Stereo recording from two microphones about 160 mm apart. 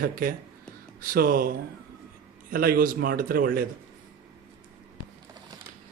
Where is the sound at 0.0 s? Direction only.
65° right (ahead or behind).